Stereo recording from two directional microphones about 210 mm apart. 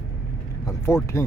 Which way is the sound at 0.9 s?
10° left (ahead or behind).